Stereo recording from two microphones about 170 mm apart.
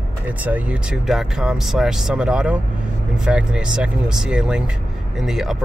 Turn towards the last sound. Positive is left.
turn(degrees=0)  # may be behind; listen again after turning